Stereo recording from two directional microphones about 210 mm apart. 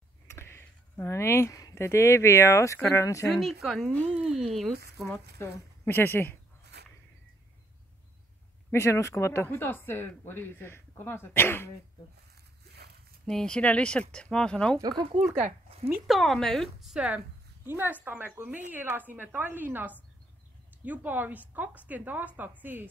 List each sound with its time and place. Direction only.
0.3 s speech: 10° left (ahead or behind)
3.3 s speech: centre (ahead or behind)
5.4 s speech: 10° left (ahead or behind)
6.7 s a sound: 50° right (ahead or behind)
8.7 s speech: 15° left (ahead or behind)
13.2 s speech: 5° left (ahead or behind)
14.8 s speech: 20° right (ahead or behind)
15.9 s speech: centre (ahead or behind)